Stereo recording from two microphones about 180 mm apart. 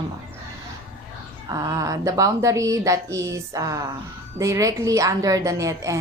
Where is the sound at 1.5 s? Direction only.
20° right (ahead or behind).